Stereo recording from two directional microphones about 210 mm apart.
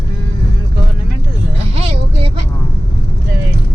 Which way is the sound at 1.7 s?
25° right (ahead or behind).